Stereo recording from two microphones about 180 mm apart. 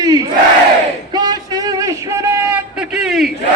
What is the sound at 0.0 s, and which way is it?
Crowd, 20° right (ahead or behind).